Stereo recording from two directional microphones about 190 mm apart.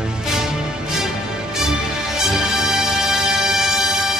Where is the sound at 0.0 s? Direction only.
5° right (ahead or behind).